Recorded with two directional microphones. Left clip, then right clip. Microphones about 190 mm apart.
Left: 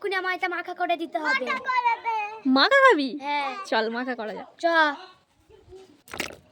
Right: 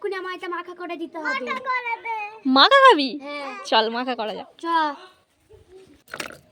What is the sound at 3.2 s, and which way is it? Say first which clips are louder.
Speech: left 6 dB; 20° left (ahead or behind).